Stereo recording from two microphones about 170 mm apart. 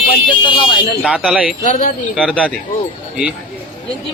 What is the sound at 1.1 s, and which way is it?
Speech, 5° right (ahead or behind).